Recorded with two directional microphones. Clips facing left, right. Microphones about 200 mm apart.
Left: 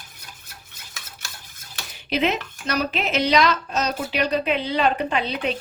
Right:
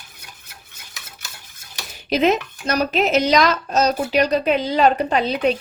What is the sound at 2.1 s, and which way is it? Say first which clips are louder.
A woman's voice: right 5 dB; 40° right (ahead or behind).